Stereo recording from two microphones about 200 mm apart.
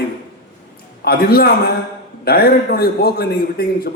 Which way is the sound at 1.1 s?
50° left (ahead or behind).